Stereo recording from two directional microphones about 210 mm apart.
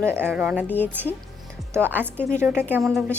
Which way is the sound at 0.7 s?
10° left (ahead or behind).